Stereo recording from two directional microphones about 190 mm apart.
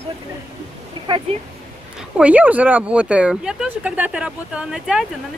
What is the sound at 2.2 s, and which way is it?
Speech, 10° right (ahead or behind).